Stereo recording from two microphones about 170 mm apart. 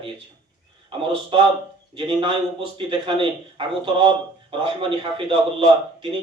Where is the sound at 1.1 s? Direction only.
30° right (ahead or behind).